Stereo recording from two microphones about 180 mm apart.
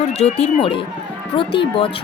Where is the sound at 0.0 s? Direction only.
35° left (ahead or behind).